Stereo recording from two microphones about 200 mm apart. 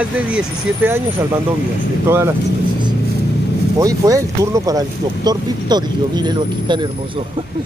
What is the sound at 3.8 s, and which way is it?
Speech, 15° right (ahead or behind).